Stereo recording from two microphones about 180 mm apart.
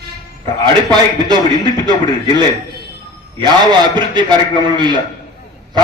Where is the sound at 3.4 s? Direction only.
25° right (ahead or behind).